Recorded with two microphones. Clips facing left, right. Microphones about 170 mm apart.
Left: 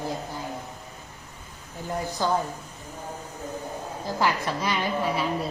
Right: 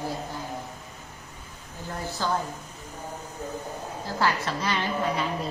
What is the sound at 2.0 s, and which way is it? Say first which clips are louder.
Speech: left 2 dB; 15° left (ahead or behind).